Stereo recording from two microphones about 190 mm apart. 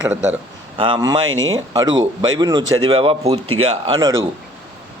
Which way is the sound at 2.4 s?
20° right (ahead or behind).